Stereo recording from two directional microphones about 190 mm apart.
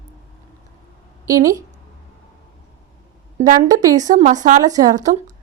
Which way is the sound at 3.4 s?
40° right (ahead or behind).